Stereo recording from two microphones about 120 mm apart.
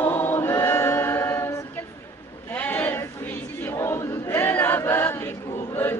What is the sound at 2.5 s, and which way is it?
Battle cry, 15° left (ahead or behind).